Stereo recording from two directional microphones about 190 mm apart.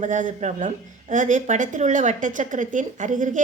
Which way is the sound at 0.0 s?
40° right (ahead or behind).